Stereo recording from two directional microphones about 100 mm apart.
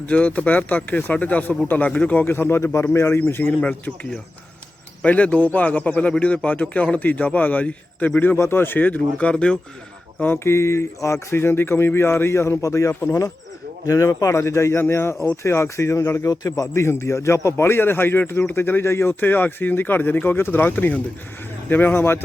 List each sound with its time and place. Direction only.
0.1 s a man's voice: 15° left (ahead or behind)
5.0 s a man's voice: 15° left (ahead or behind)